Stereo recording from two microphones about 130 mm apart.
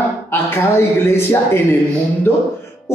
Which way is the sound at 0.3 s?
20° left (ahead or behind).